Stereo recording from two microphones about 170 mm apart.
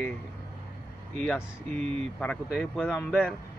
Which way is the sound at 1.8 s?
40° right (ahead or behind).